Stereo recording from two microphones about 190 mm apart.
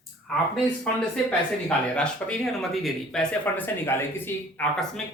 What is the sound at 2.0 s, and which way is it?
Speech, 5° left (ahead or behind).